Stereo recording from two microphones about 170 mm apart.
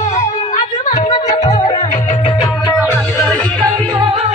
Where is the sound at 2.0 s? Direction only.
40° left (ahead or behind).